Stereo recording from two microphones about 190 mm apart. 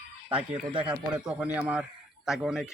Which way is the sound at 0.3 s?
30° right (ahead or behind).